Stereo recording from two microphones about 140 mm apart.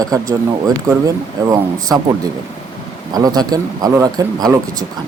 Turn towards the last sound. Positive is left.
turn(degrees=-25)  # may be behind; listen again after turning